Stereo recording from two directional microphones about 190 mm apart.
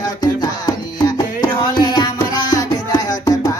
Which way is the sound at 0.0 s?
20° left (ahead or behind).